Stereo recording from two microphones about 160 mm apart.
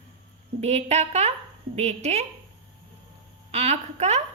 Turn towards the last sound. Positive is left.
turn(degrees=-45)  # may be behind; listen again after turning